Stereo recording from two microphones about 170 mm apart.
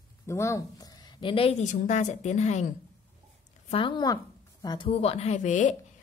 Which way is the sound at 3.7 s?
30° left (ahead or behind).